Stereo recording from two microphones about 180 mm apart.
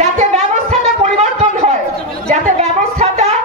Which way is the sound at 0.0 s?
40° right (ahead or behind).